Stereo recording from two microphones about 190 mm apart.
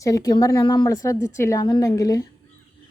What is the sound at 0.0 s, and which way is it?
Speech, 20° left (ahead or behind).